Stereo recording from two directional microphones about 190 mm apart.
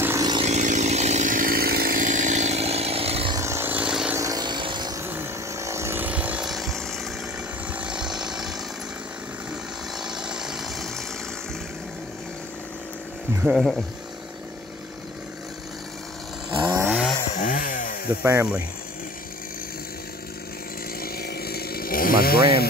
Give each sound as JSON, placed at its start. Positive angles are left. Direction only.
{"t": 0.0, "sound": "chainsaw", "side_deg": -15}
{"t": 0.4, "sound": "chainsaw", "side_deg": -35}
{"t": 3.3, "sound": "vehicle", "side_deg": -15}
{"t": 4.2, "sound": "vehicle", "side_deg": -20}
{"t": 7.7, "sound": "a sound", "side_deg": -5}
{"t": 9.9, "sound": "chainsaw", "side_deg": -5}
{"t": 13.4, "sound": "speech", "side_deg": -5}
{"t": 16.7, "sound": "chainsaw", "side_deg": -10}
{"t": 17.4, "sound": "chainsaw", "side_deg": 45}
{"t": 18.2, "sound": "speech", "side_deg": -15}
{"t": 21.0, "sound": "chainsaw", "side_deg": 55}